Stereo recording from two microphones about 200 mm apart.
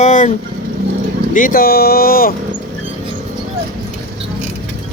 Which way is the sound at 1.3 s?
45° left (ahead or behind).